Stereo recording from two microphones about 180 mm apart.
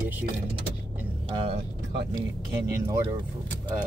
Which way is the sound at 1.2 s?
30° right (ahead or behind).